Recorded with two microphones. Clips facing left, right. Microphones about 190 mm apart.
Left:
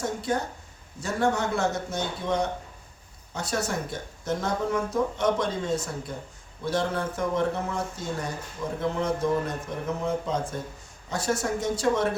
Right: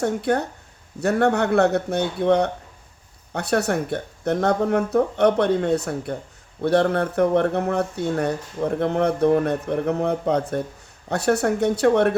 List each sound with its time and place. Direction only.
0.0 s speech: 65° right (ahead or behind)